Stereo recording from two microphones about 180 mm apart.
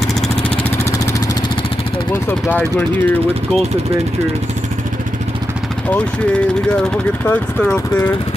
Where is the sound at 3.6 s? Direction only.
35° right (ahead or behind).